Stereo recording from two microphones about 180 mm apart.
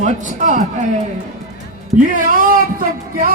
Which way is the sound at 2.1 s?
50° right (ahead or behind).